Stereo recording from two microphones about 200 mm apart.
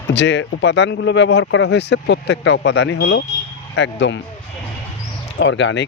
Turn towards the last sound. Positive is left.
turn(degrees=65)  # may be behind; listen again after turning